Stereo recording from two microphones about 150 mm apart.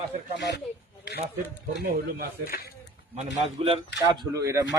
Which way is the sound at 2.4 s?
75° left (ahead or behind).